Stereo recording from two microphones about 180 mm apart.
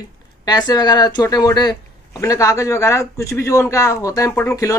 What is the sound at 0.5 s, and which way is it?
Speech, 20° left (ahead or behind).